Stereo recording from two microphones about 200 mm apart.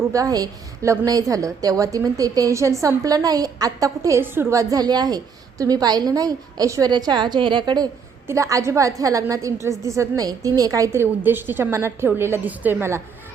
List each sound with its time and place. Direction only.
0.1 s a woman's voice: 15° right (ahead or behind)